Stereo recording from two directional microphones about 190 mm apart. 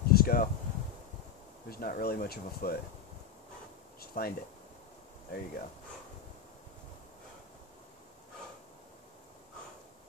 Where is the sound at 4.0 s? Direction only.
55° left (ahead or behind).